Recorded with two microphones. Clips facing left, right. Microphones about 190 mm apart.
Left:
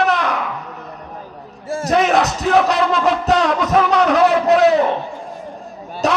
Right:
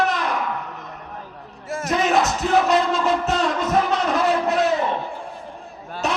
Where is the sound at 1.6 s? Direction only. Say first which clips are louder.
Left 5 dB; 30° left (ahead or behind).